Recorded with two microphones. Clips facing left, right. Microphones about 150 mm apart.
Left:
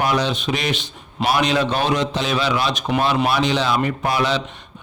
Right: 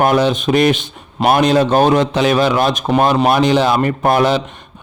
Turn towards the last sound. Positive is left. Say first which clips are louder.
# right 7 dB
turn(degrees=-50)  # may be behind; listen again after turning